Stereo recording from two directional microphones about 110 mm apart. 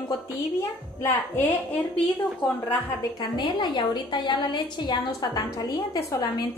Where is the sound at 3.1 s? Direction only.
40° left (ahead or behind).